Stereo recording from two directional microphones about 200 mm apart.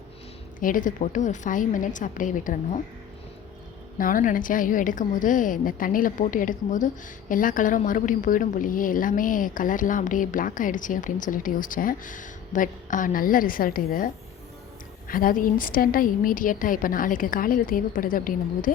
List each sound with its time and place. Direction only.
0.6 s a woman's voice: 40° left (ahead or behind)
3.9 s a woman's voice: 45° left (ahead or behind)